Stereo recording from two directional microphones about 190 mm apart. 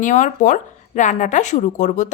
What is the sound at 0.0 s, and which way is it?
Speech, 40° left (ahead or behind).